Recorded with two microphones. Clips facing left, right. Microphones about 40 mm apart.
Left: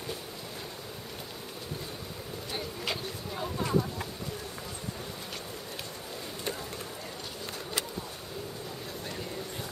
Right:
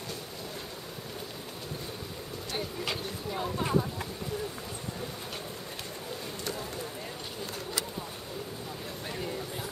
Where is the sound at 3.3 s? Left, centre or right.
Centre.